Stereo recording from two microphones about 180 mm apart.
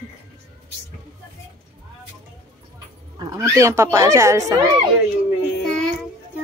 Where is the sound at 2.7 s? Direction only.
20° right (ahead or behind).